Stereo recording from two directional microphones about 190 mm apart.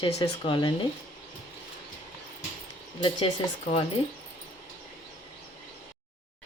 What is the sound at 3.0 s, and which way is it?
Speech, 30° left (ahead or behind).